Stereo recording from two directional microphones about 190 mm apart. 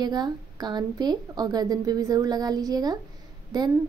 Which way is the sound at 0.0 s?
20° right (ahead or behind).